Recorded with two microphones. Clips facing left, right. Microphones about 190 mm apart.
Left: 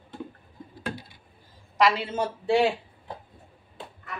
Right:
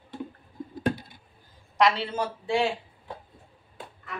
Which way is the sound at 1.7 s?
5° left (ahead or behind).